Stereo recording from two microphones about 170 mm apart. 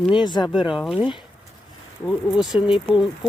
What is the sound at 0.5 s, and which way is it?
Speech, 5° right (ahead or behind).